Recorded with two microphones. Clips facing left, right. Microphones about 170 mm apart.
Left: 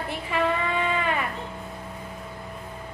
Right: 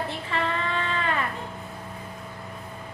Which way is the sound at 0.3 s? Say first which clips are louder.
Left 5 dB; 15° left (ahead or behind).